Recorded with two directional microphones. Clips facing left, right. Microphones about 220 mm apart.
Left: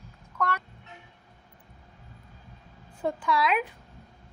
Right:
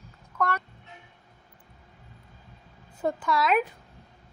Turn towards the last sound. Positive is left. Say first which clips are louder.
# right 1 dB
turn(degrees=-45)  # may be behind; listen again after turning